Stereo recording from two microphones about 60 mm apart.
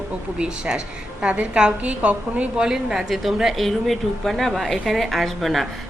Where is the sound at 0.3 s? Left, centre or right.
Centre.